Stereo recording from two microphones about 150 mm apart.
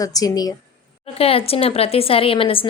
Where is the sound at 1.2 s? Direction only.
40° left (ahead or behind).